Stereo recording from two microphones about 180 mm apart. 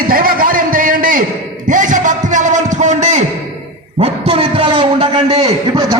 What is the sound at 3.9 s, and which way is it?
A man's voice, 35° right (ahead or behind).